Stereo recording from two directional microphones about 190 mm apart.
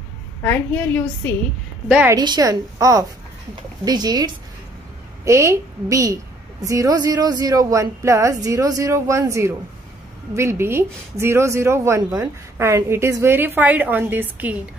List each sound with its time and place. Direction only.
0.4 s a woman's voice: 10° left (ahead or behind)
1.9 s a woman's voice: 5° right (ahead or behind)
2.1 s a woman's voice: 20° right (ahead or behind)